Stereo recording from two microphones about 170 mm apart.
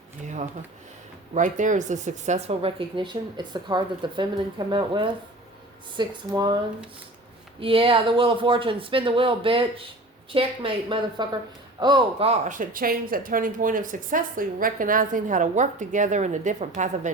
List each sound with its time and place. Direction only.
1.5 s speech: 45° right (ahead or behind); by 6.6 s 25° right (ahead or behind)
7.6 s speech: 30° right (ahead or behind)